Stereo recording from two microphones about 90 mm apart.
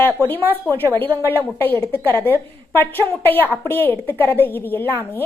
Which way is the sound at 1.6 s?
20° left (ahead or behind).